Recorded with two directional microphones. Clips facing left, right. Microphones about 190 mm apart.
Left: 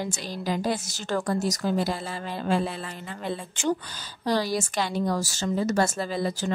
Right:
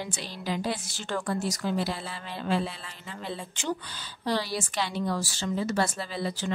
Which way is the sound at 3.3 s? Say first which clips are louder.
Left 5 dB; 50° left (ahead or behind).